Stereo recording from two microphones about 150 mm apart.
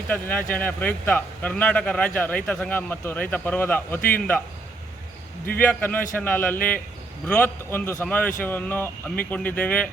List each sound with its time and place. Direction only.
0.1 s speech: 10° left (ahead or behind)
5.5 s speech: 10° left (ahead or behind)